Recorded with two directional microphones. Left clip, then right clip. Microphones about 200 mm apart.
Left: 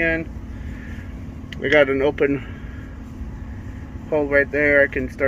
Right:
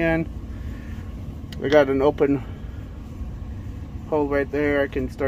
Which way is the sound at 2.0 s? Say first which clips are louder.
Even; 20° right (ahead or behind).